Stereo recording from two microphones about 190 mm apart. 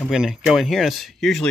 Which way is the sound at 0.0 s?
5° right (ahead or behind).